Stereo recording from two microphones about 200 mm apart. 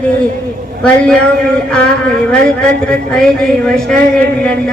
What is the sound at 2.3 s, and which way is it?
A woman's voice, 5° left (ahead or behind).